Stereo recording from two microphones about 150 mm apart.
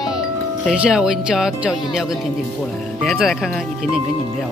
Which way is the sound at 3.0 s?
Centre (ahead or behind).